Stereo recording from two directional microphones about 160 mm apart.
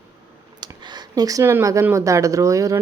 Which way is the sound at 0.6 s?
25° right (ahead or behind).